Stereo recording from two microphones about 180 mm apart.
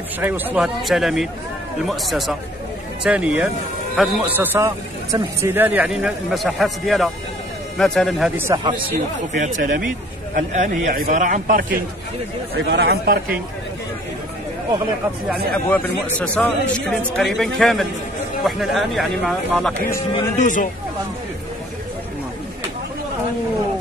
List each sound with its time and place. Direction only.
0.2 s speech: 10° right (ahead or behind)
8.5 s speech: 20° right (ahead or behind)
9.4 s a man's voice: 45° right (ahead or behind)
12.5 s speech: 70° right (ahead or behind)
15.2 s speech: 10° left (ahead or behind)
20.3 s speech: 45° left (ahead or behind)